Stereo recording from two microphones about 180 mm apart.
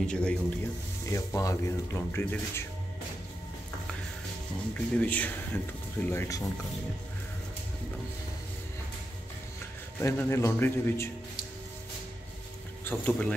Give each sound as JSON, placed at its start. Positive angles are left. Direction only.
{"t": 0.0, "sound": "a man's voice", "side_deg": 5}
{"t": 1.0, "sound": "speech", "side_deg": 20}
{"t": 4.7, "sound": "speech", "side_deg": 10}
{"t": 9.9, "sound": "speech", "side_deg": 15}
{"t": 12.8, "sound": "speech", "side_deg": 10}